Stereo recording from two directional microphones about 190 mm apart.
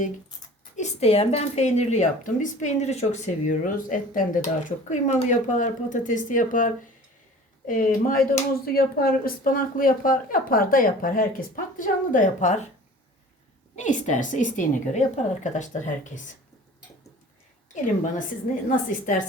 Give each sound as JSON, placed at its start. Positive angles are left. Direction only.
{"t": 0.8, "sound": "a woman's voice", "side_deg": 35}
{"t": 13.7, "sound": "a woman's voice", "side_deg": 40}
{"t": 18.5, "sound": "a woman's voice", "side_deg": 40}